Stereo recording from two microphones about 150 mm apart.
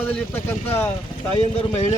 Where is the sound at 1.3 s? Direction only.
45° left (ahead or behind).